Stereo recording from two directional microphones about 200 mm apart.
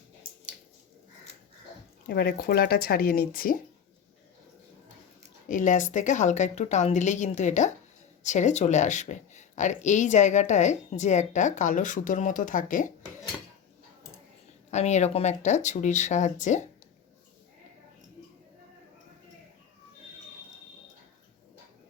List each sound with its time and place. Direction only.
2.0 s speech: 50° left (ahead or behind)
5.5 s speech: 40° left (ahead or behind)
14.7 s speech: 35° left (ahead or behind)